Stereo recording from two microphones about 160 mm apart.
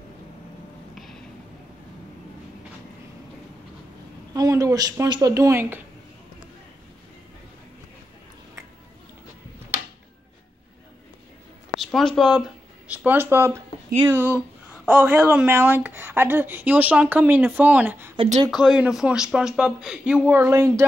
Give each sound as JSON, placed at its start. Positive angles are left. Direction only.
{"t": 4.3, "sound": "a woman's voice", "side_deg": -20}
{"t": 11.7, "sound": "a sound", "side_deg": 0}
{"t": 12.2, "sound": "speech", "side_deg": 0}
{"t": 18.1, "sound": "speech", "side_deg": -35}
{"t": 18.5, "sound": "speech", "side_deg": -5}